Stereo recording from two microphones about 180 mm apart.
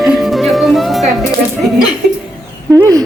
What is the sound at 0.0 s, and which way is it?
Music, centre (ahead or behind).